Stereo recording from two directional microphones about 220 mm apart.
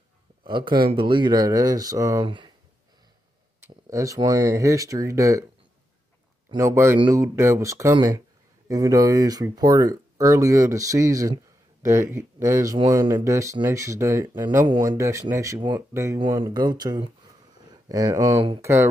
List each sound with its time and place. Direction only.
0.4 s speech: 20° right (ahead or behind)
3.9 s speech: 15° right (ahead or behind)
6.5 s speech: 15° right (ahead or behind)